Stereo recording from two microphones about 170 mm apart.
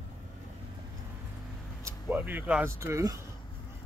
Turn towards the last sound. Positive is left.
turn(degrees=-20)  # may be behind; listen again after turning